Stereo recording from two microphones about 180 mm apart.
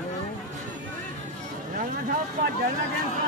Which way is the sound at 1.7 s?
50° right (ahead or behind).